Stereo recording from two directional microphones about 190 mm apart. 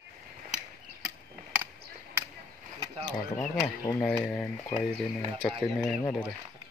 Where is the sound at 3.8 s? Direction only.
20° left (ahead or behind).